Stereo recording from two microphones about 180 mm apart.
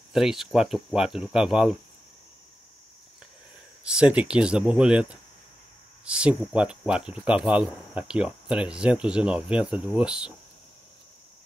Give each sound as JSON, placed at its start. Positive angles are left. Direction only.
{"t": 0.1, "sound": "speech", "side_deg": 0}
{"t": 3.8, "sound": "speech", "side_deg": -5}